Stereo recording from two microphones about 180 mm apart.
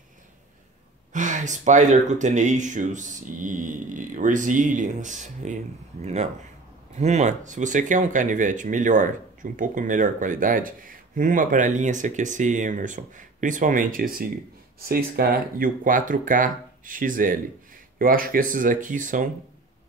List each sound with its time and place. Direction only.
1.1 s speech: 45° right (ahead or behind)
7.0 s speech: 40° right (ahead or behind)